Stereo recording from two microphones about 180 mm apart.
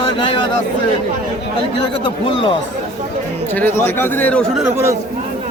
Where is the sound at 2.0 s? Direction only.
30° left (ahead or behind).